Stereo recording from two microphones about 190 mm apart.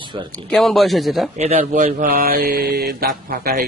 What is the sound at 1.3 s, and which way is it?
Speech, 35° right (ahead or behind).